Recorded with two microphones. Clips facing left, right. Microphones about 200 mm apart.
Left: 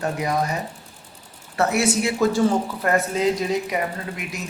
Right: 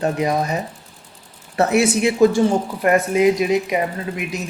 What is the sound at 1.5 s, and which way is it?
Speech, 20° right (ahead or behind).